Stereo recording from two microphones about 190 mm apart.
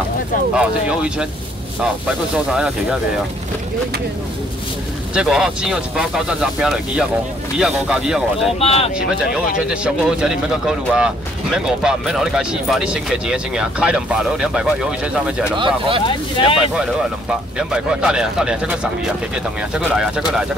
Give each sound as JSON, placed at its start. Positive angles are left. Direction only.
{"t": 0.6, "sound": "speech", "side_deg": -5}
{"t": 2.3, "sound": "speech", "side_deg": -5}
{"t": 5.1, "sound": "speech", "side_deg": -5}
{"t": 8.5, "sound": "speech", "side_deg": 30}
{"t": 9.6, "sound": "speech", "side_deg": -5}
{"t": 15.6, "sound": "speech", "side_deg": -25}
{"t": 16.1, "sound": "speech", "side_deg": 25}
{"t": 17.3, "sound": "speech", "side_deg": -5}